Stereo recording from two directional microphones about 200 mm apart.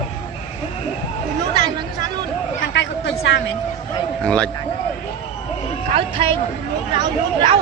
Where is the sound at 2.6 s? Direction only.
60° left (ahead or behind).